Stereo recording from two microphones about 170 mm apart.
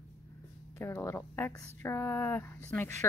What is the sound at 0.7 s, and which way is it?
Speech, 15° left (ahead or behind).